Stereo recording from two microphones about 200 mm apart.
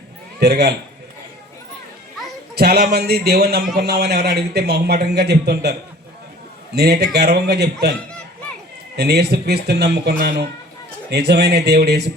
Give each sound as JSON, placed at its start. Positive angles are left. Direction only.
{"t": 0.3, "sound": "a man's voice", "side_deg": -55}
{"t": 2.6, "sound": "a man's voice", "side_deg": -55}
{"t": 6.7, "sound": "a man's voice", "side_deg": -55}
{"t": 9.0, "sound": "a man's voice", "side_deg": -55}